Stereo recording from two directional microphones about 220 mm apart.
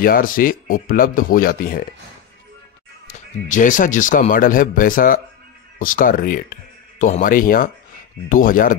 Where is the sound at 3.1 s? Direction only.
35° left (ahead or behind).